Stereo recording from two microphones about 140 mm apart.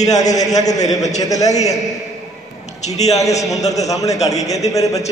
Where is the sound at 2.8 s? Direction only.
50° left (ahead or behind).